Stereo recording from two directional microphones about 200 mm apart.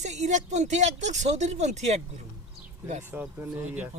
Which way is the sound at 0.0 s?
35° right (ahead or behind).